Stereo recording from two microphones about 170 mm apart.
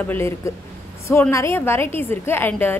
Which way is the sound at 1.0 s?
15° left (ahead or behind).